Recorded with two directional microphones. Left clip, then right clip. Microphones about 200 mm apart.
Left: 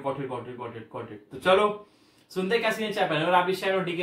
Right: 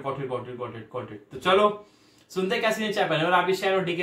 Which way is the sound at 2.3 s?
5° right (ahead or behind).